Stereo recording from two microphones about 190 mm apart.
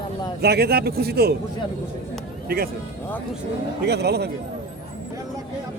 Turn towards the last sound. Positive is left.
turn(degrees=-60)  # may be behind; listen again after turning